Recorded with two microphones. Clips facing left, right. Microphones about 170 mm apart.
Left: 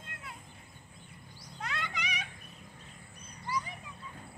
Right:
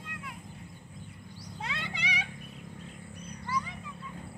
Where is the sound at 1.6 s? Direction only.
30° right (ahead or behind).